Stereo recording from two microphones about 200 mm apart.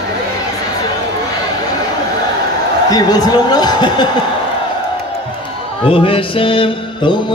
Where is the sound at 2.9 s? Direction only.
20° left (ahead or behind).